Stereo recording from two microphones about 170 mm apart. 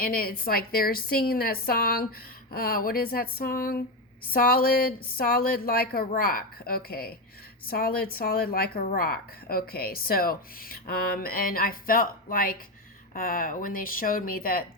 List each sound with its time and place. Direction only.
0.0 s a woman's voice: 60° left (ahead or behind)